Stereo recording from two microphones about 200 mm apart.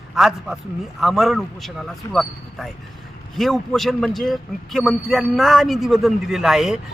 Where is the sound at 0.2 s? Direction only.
Centre (ahead or behind).